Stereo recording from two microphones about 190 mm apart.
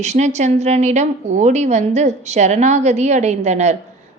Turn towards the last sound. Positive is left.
turn(degrees=-35)  # may be behind; listen again after turning